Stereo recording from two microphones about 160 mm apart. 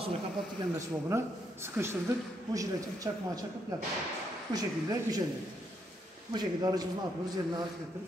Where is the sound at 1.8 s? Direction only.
15° right (ahead or behind).